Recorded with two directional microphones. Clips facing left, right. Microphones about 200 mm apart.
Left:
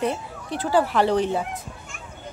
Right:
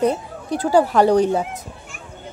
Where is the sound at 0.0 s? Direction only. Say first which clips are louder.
Right 6 dB; 45° right (ahead or behind).